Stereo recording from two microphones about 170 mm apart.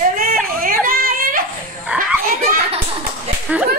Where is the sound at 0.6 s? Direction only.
55° right (ahead or behind).